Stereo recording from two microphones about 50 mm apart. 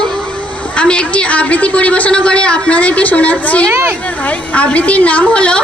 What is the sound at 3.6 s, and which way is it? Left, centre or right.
Speech, right.